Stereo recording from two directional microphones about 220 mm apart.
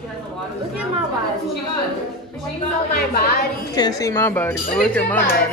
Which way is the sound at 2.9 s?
45° left (ahead or behind).